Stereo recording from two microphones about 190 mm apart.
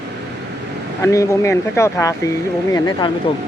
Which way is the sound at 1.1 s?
15° left (ahead or behind).